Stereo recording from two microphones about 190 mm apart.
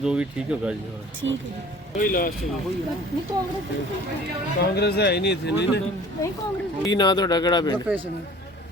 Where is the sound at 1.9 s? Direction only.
45° left (ahead or behind).